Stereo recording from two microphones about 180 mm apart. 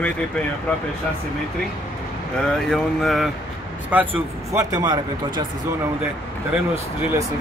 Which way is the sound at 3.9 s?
10° right (ahead or behind).